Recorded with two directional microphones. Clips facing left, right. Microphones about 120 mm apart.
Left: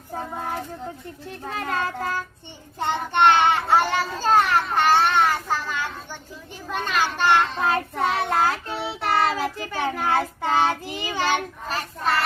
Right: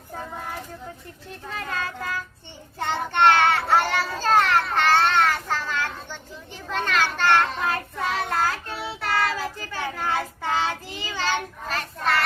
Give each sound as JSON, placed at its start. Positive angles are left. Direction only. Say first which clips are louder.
{"t": 1.5, "sound": "speech", "louder": "left 4 dB", "side_deg": 30}
{"t": 2.7, "sound": "child singing", "louder": "left 2 dB", "side_deg": 15}
{"t": 6.7, "sound": "a child's voice", "louder": "even", "side_deg": 15}
{"t": 7.6, "sound": "child singing", "louder": "left 4 dB", "side_deg": 30}
{"t": 10.8, "sound": "a child's voice", "louder": "left 3 dB", "side_deg": 15}